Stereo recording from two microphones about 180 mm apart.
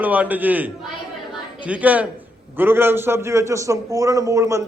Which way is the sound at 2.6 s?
10° right (ahead or behind).